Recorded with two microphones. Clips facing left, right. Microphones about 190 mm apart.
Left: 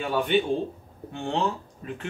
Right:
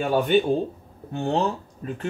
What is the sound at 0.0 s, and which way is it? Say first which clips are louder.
Speech: right 4 dB; 45° right (ahead or behind).